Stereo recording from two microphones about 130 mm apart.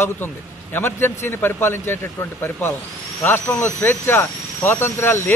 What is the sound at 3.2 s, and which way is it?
Speech, 20° left (ahead or behind).